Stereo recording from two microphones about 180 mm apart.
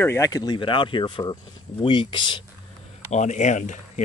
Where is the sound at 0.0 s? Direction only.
15° left (ahead or behind).